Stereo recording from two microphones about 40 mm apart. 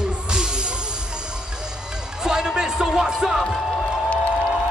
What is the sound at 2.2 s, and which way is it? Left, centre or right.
Music, centre.